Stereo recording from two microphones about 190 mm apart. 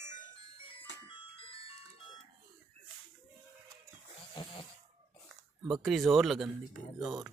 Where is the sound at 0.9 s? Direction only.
70° left (ahead or behind).